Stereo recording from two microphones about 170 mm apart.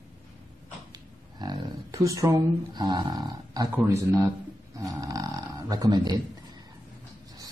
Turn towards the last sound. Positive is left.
turn(degrees=-25)  # may be behind; listen again after turning